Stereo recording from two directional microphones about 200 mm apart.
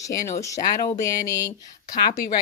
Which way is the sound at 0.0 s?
15° left (ahead or behind).